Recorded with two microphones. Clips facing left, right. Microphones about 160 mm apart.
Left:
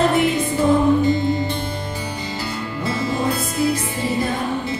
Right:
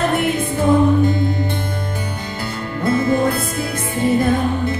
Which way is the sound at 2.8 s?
55° right (ahead or behind).